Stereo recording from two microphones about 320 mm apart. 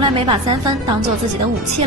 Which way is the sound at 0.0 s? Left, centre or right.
Centre.